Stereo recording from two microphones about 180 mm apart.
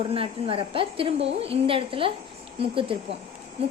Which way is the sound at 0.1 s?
30° right (ahead or behind).